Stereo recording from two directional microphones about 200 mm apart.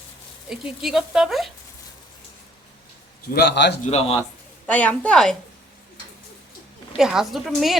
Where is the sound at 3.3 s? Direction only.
55° left (ahead or behind).